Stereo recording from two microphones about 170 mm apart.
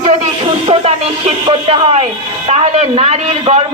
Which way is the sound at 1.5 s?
30° right (ahead or behind).